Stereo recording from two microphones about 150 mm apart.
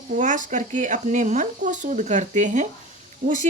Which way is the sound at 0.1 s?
60° right (ahead or behind).